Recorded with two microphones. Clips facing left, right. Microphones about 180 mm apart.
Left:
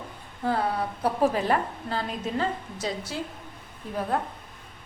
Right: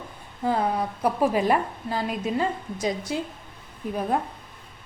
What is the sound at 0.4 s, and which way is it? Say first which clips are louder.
A woman's voice: right 2 dB; 15° right (ahead or behind).